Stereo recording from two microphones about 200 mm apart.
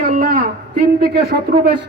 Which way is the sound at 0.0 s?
45° right (ahead or behind).